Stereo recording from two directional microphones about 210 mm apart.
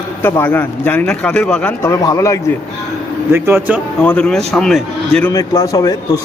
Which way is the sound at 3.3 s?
10° right (ahead or behind).